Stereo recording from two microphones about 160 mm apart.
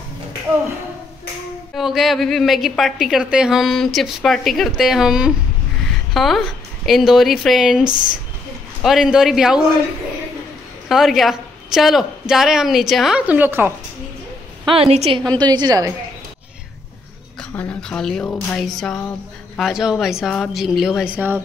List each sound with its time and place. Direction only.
1.8 s a woman's voice: centre (ahead or behind)
10.9 s a woman's voice: centre (ahead or behind)
14.7 s a woman's voice: 40° right (ahead or behind)
15.4 s a woman's voice: 25° right (ahead or behind)
17.4 s a woman's voice: 5° left (ahead or behind); by 21.4 s 10° right (ahead or behind)